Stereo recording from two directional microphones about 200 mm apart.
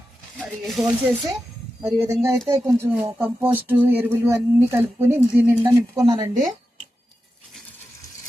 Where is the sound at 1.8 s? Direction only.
15° right (ahead or behind).